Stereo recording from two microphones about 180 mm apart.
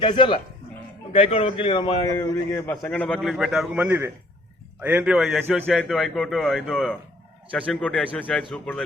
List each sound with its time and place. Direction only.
0.0 s a man's voice: 25° left (ahead or behind); by 8.8 s 5° left (ahead or behind)